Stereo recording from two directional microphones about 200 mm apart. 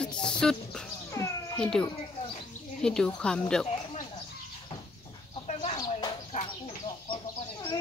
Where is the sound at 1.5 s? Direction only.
5° left (ahead or behind).